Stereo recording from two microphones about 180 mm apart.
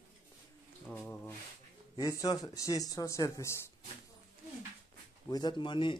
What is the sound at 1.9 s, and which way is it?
Speech, 20° left (ahead or behind).